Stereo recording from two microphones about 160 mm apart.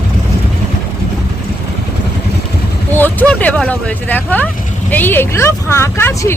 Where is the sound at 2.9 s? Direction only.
10° left (ahead or behind).